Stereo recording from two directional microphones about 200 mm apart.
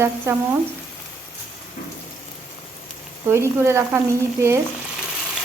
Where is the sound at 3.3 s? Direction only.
15° right (ahead or behind).